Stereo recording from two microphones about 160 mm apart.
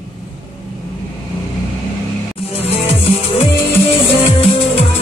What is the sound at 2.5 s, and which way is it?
Music, 40° left (ahead or behind).